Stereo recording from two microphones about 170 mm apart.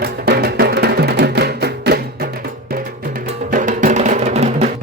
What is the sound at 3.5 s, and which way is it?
Music, 50° right (ahead or behind).